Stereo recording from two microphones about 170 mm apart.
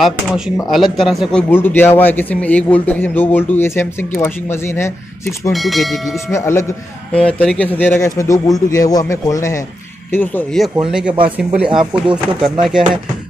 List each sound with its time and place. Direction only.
0.0 s speech: centre (ahead or behind)
1.5 s a man's voice: 10° left (ahead or behind)
5.5 s speech: centre (ahead or behind)
6.3 s a man's voice: 15° left (ahead or behind)
7.2 s a man's voice: 5° left (ahead or behind)
10.9 s speech: 5° right (ahead or behind)